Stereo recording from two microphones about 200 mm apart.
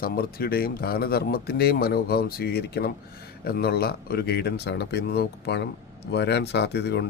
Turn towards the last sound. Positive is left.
turn(degrees=55)  # may be behind; listen again after turning